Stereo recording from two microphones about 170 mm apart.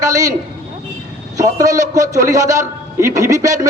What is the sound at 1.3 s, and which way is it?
A man's voice, 20° right (ahead or behind).